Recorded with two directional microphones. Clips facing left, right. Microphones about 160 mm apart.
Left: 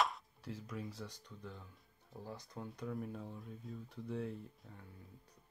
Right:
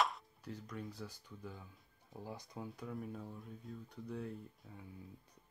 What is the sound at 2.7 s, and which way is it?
Speech, centre (ahead or behind).